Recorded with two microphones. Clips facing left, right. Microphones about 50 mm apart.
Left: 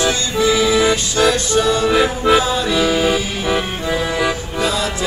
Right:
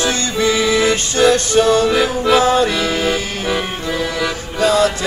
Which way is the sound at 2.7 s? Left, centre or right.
Centre.